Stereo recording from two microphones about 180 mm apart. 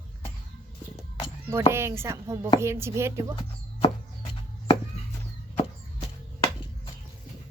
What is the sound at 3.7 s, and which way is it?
Music, 30° left (ahead or behind).